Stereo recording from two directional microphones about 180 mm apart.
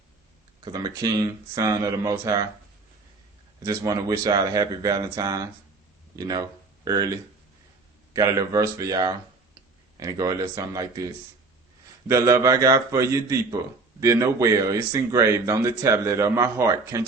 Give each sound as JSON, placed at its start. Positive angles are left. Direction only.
{"t": 0.6, "sound": "speech", "side_deg": -20}
{"t": 3.6, "sound": "speech", "side_deg": -20}
{"t": 8.1, "sound": "speech", "side_deg": -20}
{"t": 12.0, "sound": "speech", "side_deg": -20}